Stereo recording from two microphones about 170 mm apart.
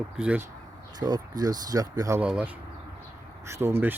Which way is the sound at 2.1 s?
10° right (ahead or behind).